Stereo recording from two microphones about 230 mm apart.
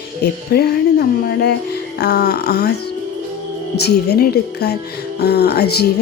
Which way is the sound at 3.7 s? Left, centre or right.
Left.